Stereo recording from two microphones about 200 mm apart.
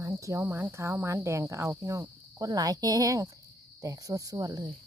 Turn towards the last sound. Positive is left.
turn(degrees=-20)  # may be behind; listen again after turning